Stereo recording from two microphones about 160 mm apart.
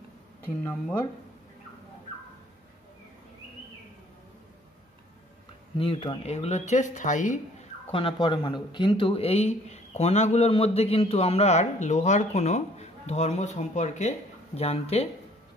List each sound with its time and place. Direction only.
0.7 s speech: 10° left (ahead or behind)
5.8 s speech: 35° left (ahead or behind); by 7.6 s 50° left (ahead or behind)
7.9 s speech: 30° left (ahead or behind)